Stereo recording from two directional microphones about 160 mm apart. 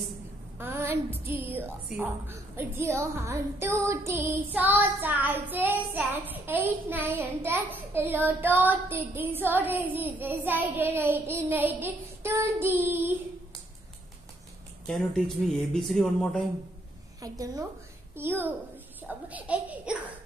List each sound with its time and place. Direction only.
0.6 s a woman's voice: 15° right (ahead or behind)
14.9 s speech: centre (ahead or behind)
17.2 s a woman's voice: 20° right (ahead or behind)